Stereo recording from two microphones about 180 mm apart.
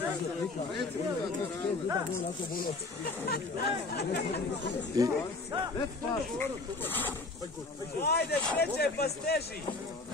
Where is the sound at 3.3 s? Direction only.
65° left (ahead or behind).